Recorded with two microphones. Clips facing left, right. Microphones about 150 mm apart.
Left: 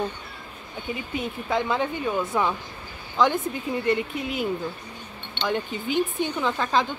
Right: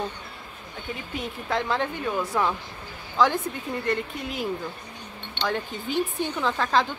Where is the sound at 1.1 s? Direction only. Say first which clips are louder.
Left 2 dB; centre (ahead or behind).